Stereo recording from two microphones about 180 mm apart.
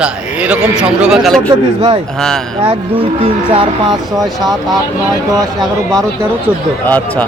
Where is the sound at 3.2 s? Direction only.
25° right (ahead or behind).